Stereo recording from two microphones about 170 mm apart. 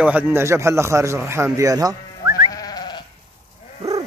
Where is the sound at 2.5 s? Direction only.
25° left (ahead or behind).